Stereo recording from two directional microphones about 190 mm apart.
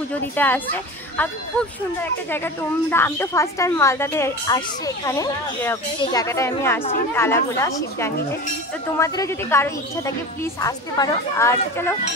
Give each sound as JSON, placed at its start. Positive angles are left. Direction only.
{"t": 0.1, "sound": "speech", "side_deg": 10}